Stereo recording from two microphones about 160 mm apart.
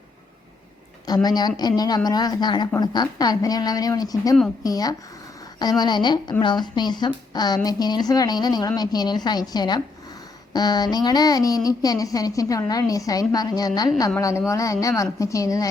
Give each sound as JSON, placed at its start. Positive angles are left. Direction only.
{"t": 1.0, "sound": "a woman's voice", "side_deg": 25}